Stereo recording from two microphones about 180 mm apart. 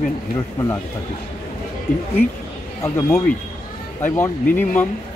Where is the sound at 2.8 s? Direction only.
15° left (ahead or behind).